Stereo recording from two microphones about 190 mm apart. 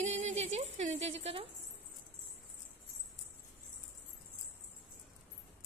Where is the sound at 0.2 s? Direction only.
35° right (ahead or behind).